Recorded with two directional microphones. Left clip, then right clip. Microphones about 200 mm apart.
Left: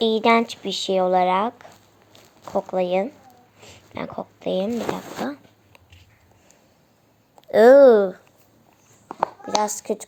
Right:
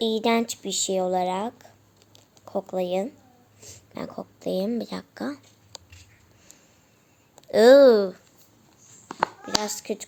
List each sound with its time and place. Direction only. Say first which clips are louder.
0.0 s speech: left 6 dB; 5° right (ahead or behind)
7.4 s speech: left 3 dB; 5° right (ahead or behind)
9.0 s a sound: left 2 dB; 20° right (ahead or behind)
9.6 s speech: left 7 dB; 10° left (ahead or behind)